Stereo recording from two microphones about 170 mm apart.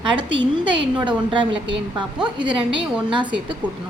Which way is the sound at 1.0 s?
25° right (ahead or behind).